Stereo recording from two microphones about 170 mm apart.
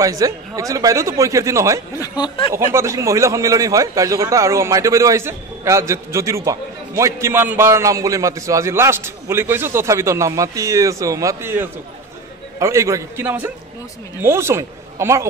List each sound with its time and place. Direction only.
0.0 s speech: 20° right (ahead or behind)
2.0 s speech: 25° left (ahead or behind)
2.5 s a man's voice: 15° right (ahead or behind)